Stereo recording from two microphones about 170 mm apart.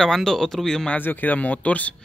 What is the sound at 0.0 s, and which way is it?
Speech, 5° left (ahead or behind).